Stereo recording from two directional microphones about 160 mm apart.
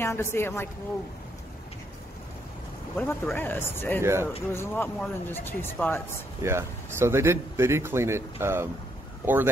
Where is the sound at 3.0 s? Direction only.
15° left (ahead or behind).